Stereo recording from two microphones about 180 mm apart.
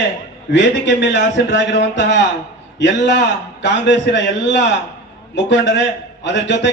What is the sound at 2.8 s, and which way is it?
A man's voice, 80° left.